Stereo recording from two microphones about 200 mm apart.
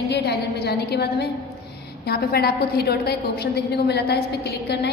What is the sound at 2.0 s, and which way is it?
A woman's voice, 50° left (ahead or behind).